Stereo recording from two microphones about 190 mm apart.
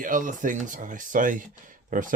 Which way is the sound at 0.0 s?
45° right (ahead or behind).